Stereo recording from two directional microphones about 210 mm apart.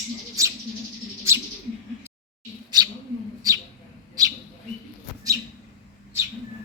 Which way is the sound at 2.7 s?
20° right (ahead or behind).